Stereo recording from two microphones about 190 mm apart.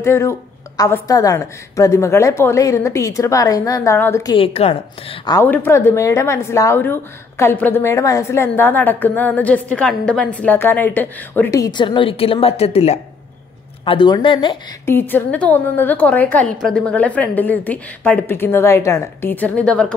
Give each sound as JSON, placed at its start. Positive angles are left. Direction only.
{"t": 0.0, "sound": "speech", "side_deg": 15}
{"t": 4.6, "sound": "a woman's voice", "side_deg": 30}
{"t": 5.3, "sound": "speech", "side_deg": 10}
{"t": 14.9, "sound": "speech", "side_deg": 10}